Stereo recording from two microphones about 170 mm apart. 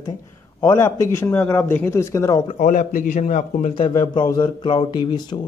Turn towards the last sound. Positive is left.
turn(degrees=25)  # may be behind; listen again after turning